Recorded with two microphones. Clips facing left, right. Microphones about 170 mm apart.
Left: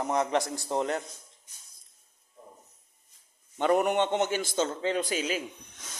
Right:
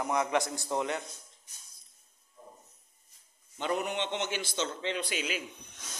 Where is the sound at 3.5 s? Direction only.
55° left (ahead or behind); by 5.4 s 40° left (ahead or behind).